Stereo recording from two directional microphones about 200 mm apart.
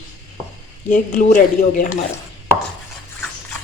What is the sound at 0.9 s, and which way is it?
Speech, 35° left (ahead or behind).